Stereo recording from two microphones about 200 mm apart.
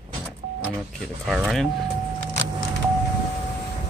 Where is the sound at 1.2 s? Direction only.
Centre (ahead or behind).